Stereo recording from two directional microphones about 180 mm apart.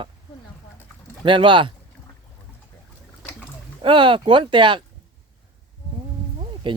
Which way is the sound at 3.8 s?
25° right (ahead or behind).